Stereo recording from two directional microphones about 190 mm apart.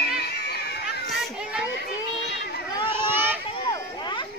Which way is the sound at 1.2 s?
5° right (ahead or behind).